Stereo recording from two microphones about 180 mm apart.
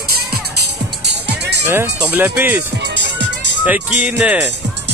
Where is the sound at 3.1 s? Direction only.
80° right.